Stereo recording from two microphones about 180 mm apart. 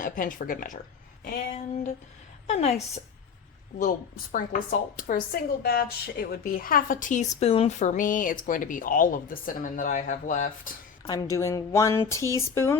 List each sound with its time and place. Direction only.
0.0 s a woman's voice: 50° left (ahead or behind)
1.5 s a sound: 40° left (ahead or behind)
3.8 s a woman's voice: 50° left (ahead or behind)
11.0 s speech: 20° left (ahead or behind)